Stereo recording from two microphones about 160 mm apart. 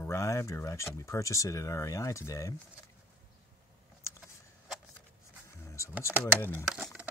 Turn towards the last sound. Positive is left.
turn(degrees=10)  # may be behind; listen again after turning